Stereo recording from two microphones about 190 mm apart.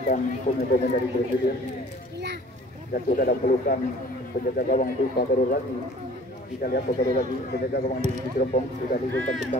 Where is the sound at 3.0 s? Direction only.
45° left (ahead or behind).